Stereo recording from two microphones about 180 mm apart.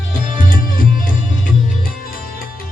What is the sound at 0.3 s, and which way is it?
Music, 50° left (ahead or behind).